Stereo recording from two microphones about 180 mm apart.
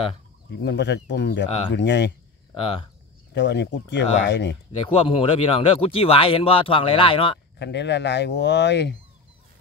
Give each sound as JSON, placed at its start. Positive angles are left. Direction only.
{"t": 0.5, "sound": "speech", "side_deg": 75}
{"t": 2.5, "sound": "speech", "side_deg": 30}
{"t": 3.3, "sound": "speech", "side_deg": 70}
{"t": 4.7, "sound": "speech", "side_deg": 30}
{"t": 7.5, "sound": "speech", "side_deg": 75}